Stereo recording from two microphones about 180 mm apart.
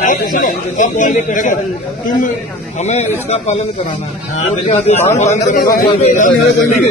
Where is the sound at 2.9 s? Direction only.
40° left (ahead or behind).